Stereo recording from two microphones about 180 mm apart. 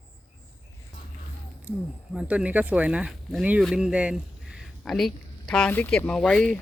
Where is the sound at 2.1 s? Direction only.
5° right (ahead or behind).